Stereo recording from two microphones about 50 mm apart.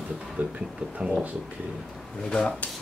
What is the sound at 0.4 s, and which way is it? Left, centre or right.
Speech, right.